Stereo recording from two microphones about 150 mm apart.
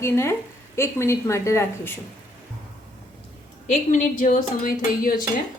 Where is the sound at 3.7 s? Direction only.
60° left (ahead or behind).